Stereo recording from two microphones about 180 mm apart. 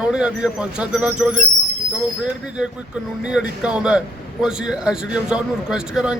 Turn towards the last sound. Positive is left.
turn(degrees=-5)  # may be behind; listen again after turning